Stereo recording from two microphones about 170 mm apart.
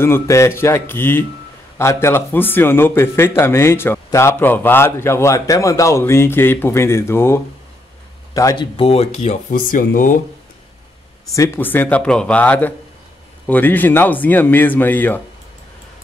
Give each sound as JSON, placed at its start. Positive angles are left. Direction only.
{"t": 0.0, "sound": "speech", "side_deg": 15}
{"t": 8.7, "sound": "speech", "side_deg": 35}
{"t": 11.3, "sound": "speech", "side_deg": 15}